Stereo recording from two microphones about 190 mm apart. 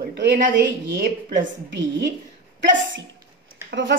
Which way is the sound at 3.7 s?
75° right (ahead or behind).